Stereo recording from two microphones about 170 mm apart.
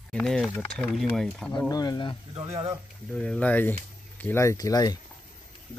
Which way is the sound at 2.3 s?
35° right (ahead or behind).